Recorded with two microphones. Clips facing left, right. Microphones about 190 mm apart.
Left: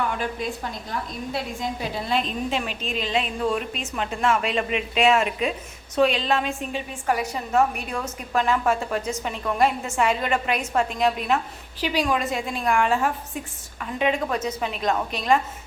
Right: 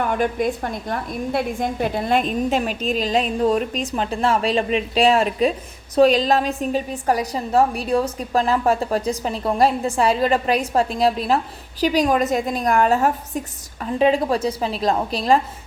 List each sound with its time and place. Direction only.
0.0 s a woman's voice: 50° right (ahead or behind); by 15.4 s 35° right (ahead or behind)